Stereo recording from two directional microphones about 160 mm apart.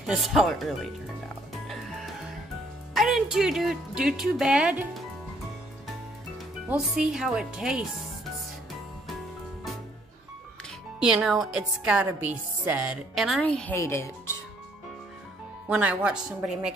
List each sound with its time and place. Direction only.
0.0 s speech: centre (ahead or behind)
1.7 s music: centre (ahead or behind)
2.9 s speech: centre (ahead or behind)
6.7 s speech: 5° right (ahead or behind)
11.0 s speech: 5° right (ahead or behind); by 14.3 s 15° left (ahead or behind)
15.7 s speech: 10° right (ahead or behind)